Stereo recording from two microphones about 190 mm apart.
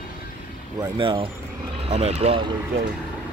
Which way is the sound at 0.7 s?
20° right (ahead or behind).